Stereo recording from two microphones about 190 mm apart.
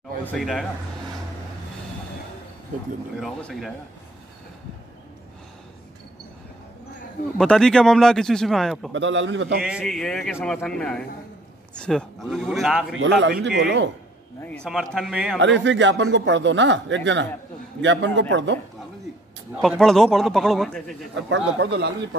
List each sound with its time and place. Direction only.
0.2 s speech: 5° left (ahead or behind)
3.2 s speech: 5° left (ahead or behind)
7.3 s speech: 5° left (ahead or behind)
8.9 s speech: 75° right (ahead or behind)
9.6 s speech: centre (ahead or behind)
13.2 s speech: 65° right (ahead or behind)
14.4 s speech: 5° left (ahead or behind)
15.3 s speech: 70° right (ahead or behind)
19.5 s speech: centre (ahead or behind)
21.1 s speech: 70° right (ahead or behind)